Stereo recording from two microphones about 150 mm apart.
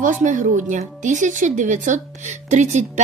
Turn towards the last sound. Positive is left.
turn(degrees=-55)  # may be behind; listen again after turning